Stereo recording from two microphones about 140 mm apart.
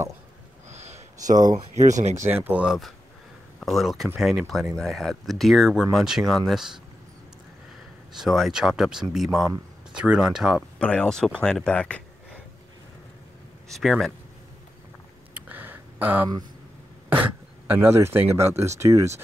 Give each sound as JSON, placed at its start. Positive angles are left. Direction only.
{"t": 0.7, "sound": "a sound", "side_deg": -50}
{"t": 1.8, "sound": "speech", "side_deg": -55}
{"t": 2.1, "sound": "speech", "side_deg": -15}
{"t": 8.1, "sound": "speech", "side_deg": 0}
{"t": 10.8, "sound": "speech", "side_deg": 5}
{"t": 13.7, "sound": "speech", "side_deg": 0}
{"t": 15.3, "sound": "a sound", "side_deg": -15}
{"t": 17.1, "sound": "speech", "side_deg": -15}